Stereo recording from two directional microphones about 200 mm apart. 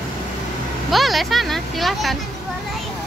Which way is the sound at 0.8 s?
Centre (ahead or behind).